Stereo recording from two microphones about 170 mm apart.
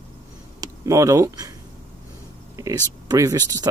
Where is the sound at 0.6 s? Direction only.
20° right (ahead or behind).